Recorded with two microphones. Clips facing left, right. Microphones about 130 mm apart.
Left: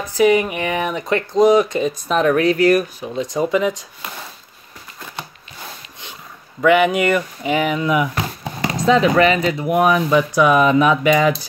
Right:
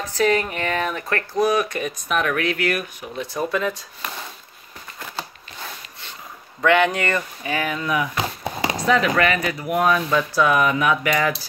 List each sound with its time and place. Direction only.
0.0 s speech: 15° left (ahead or behind); by 3.1 s 35° left (ahead or behind)
3.2 s speech: 15° left (ahead or behind)
6.6 s speech: 5° left (ahead or behind)